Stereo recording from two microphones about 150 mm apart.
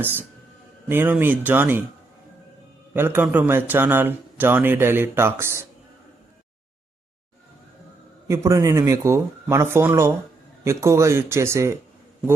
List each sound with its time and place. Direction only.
0.0 s a man's voice: 15° right (ahead or behind)
2.9 s a man's voice: 15° right (ahead or behind)
8.3 s speech: 20° right (ahead or behind)